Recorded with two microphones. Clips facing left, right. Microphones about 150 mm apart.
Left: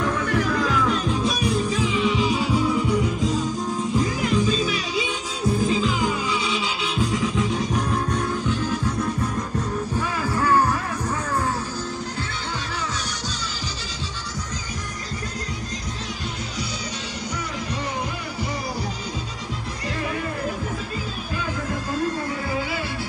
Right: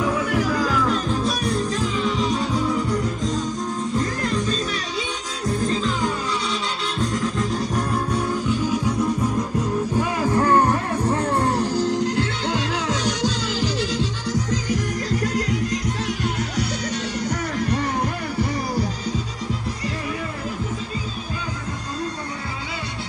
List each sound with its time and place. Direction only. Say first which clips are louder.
0.0 s music: right 1 dB; 5° right (ahead or behind)
9.9 s music: right 5 dB; 20° right (ahead or behind)
11.4 s music: right 7 dB; 80° right